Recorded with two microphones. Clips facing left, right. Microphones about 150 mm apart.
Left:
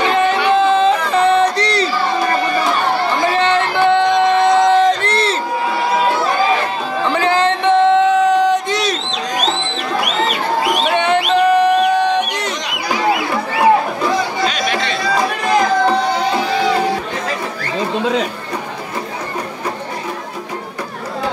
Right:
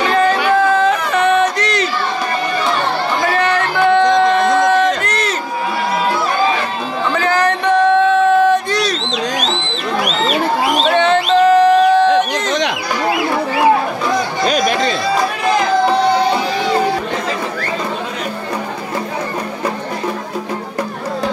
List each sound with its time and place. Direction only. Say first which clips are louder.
0.1 s yodeling: right 3 dB; 20° left (ahead or behind)
0.5 s crowd: left 1 dB; 25° left (ahead or behind)
3.3 s singing: even; 25° left (ahead or behind)
7.1 s a sound: even; 25° left (ahead or behind)
11.0 s music: right 3 dB; 15° left (ahead or behind)
14.5 s chatter: right 4 dB; 40° right (ahead or behind)